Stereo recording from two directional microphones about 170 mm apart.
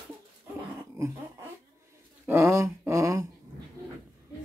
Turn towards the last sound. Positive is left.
turn(degrees=-20)  # may be behind; listen again after turning